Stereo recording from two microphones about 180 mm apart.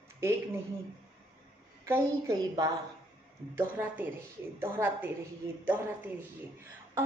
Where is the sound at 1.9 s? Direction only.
15° right (ahead or behind).